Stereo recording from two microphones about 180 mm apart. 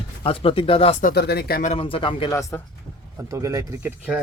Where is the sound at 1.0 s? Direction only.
55° left (ahead or behind).